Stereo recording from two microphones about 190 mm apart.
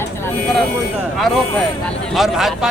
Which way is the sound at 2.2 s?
Centre (ahead or behind).